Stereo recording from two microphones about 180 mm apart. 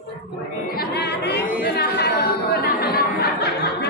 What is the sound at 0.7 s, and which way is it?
Chatter, 65° left (ahead or behind).